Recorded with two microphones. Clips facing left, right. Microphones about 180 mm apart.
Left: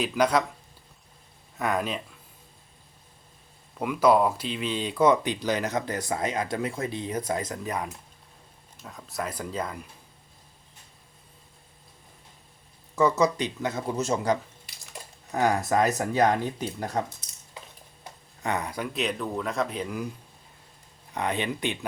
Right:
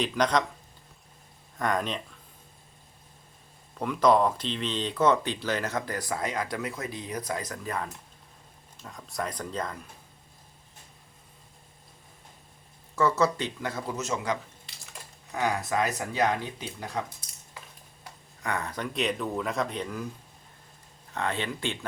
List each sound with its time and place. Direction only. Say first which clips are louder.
0.0 s speech: left 2 dB; 5° left (ahead or behind)
1.5 s speech: left 1 dB; 5° left (ahead or behind)
3.8 s speech: left 1 dB; 10° left (ahead or behind)
8.8 s speech: left 1 dB; centre (ahead or behind)
13.0 s speech: left 2 dB; 15° left (ahead or behind); by 17.0 s 45° left (ahead or behind)
18.0 s speech: left 4 dB; 20° left (ahead or behind)
21.1 s speech: left 2 dB; 15° left (ahead or behind)